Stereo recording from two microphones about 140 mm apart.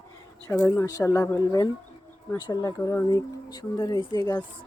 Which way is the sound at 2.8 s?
15° left (ahead or behind).